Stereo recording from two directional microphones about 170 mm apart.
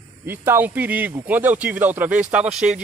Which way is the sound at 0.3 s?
10° right (ahead or behind).